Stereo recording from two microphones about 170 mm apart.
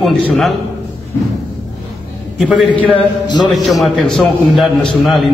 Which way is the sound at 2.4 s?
Centre (ahead or behind).